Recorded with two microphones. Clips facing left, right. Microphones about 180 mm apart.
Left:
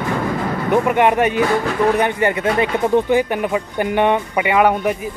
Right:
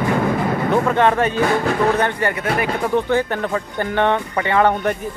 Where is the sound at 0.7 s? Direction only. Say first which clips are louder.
Left 2 dB; 15° left (ahead or behind).